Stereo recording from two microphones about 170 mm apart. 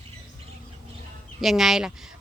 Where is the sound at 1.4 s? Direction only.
Centre (ahead or behind).